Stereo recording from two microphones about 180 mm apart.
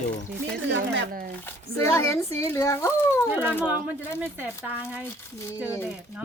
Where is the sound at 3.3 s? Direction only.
10° right (ahead or behind).